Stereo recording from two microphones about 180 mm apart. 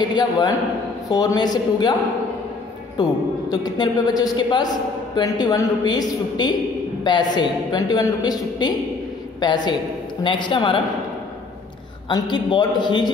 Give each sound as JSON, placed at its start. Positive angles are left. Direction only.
{"t": 0.1, "sound": "a woman's voice", "side_deg": 25}
{"t": 3.0, "sound": "a woman's voice", "side_deg": 20}
{"t": 12.1, "sound": "a woman's voice", "side_deg": 25}